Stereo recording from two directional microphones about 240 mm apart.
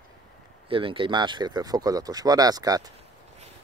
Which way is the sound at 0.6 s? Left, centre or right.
Right.